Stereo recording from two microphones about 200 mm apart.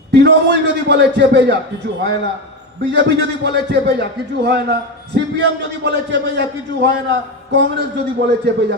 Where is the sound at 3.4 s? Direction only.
55° right (ahead or behind).